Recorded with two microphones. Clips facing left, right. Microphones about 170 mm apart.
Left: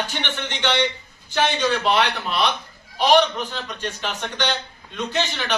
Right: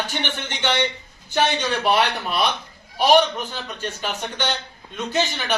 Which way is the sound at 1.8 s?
10° right (ahead or behind).